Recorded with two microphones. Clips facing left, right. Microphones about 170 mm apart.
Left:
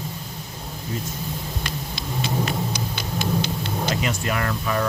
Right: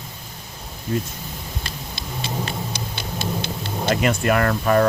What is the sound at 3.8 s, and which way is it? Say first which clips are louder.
Speech: right 7 dB; 55° right (ahead or behind).